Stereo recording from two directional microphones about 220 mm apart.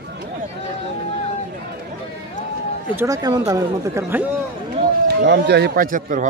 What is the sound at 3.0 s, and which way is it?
Speech, 15° right (ahead or behind).